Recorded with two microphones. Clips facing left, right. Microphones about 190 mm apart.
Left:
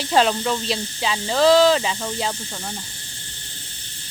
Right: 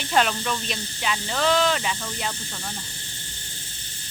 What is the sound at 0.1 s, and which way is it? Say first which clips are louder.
Speech: left 4 dB; 25° left (ahead or behind).